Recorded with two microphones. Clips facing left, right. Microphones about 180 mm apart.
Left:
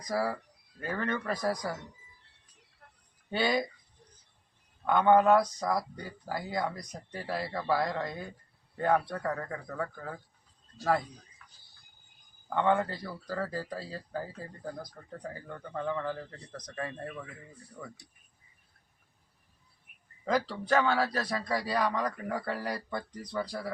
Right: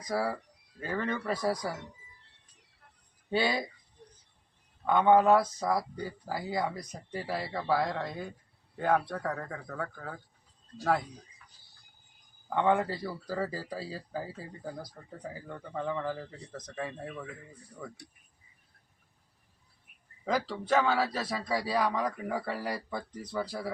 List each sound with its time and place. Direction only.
0.1 s speech: centre (ahead or behind)
3.2 s speech: centre (ahead or behind)
4.9 s speech: centre (ahead or behind)
12.5 s speech: 5° right (ahead or behind)
20.2 s speech: centre (ahead or behind)